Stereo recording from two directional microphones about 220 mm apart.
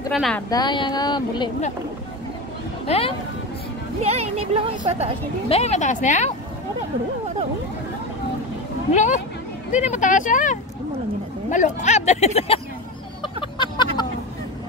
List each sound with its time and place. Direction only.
0.1 s speech: centre (ahead or behind)
0.5 s speech: 20° left (ahead or behind)
2.9 s speech: 25° left (ahead or behind)
4.0 s speech: 30° right (ahead or behind)
5.5 s speech: 30° left (ahead or behind)
8.9 s speech: 35° left (ahead or behind)
13.2 s a sound: 20° left (ahead or behind)